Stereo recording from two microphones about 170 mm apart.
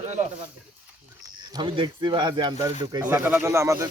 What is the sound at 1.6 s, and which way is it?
Speech, 30° right (ahead or behind).